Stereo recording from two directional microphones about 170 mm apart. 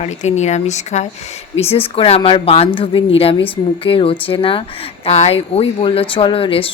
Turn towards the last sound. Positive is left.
turn(degrees=30)  # may be behind; listen again after turning